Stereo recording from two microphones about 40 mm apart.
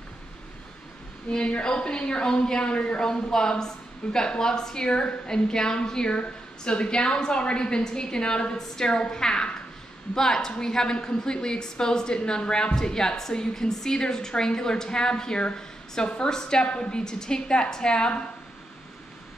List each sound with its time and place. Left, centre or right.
1.3 s speech: left